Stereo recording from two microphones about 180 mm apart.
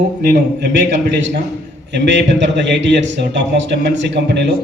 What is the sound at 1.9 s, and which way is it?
Speech, 75° right (ahead or behind).